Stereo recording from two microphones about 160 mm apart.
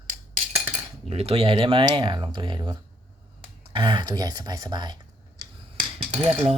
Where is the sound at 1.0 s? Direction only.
40° right (ahead or behind).